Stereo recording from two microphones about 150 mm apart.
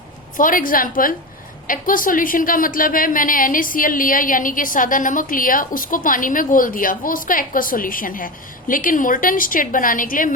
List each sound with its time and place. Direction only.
0.3 s a woman's voice: 65° left (ahead or behind)